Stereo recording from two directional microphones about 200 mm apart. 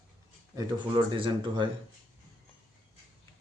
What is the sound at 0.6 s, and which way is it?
Speech, 25° right (ahead or behind).